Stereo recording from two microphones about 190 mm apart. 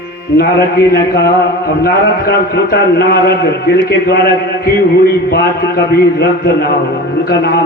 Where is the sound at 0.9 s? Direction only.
60° left (ahead or behind).